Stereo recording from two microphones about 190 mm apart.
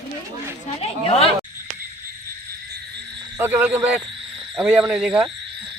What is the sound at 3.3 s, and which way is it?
Frog, 10° right (ahead or behind).